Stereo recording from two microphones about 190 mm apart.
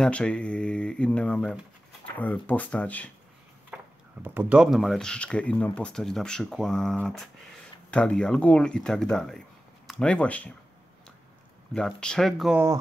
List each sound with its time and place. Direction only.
0.0 s speech: 5° left (ahead or behind)
3.7 s speech: 10° right (ahead or behind); by 10.5 s 5° left (ahead or behind)
11.7 s speech: 5° left (ahead or behind)